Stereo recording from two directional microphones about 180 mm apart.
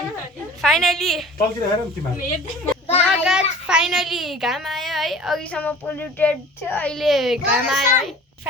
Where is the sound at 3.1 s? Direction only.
5° right (ahead or behind).